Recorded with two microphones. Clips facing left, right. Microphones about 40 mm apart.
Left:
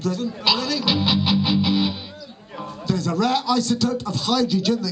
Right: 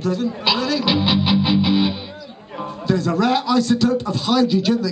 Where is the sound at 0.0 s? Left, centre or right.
Centre.